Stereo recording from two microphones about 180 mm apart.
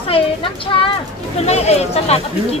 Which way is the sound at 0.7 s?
30° left (ahead or behind).